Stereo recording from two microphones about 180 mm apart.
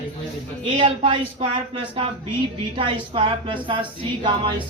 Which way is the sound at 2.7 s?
30° right (ahead or behind).